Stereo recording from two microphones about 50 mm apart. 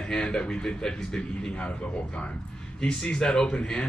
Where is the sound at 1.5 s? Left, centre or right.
Left.